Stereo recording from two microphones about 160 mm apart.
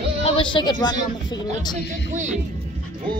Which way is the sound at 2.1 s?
50° right (ahead or behind).